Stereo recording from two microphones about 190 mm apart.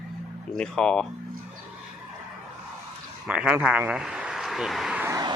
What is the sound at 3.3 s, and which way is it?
A man's voice, 5° right (ahead or behind).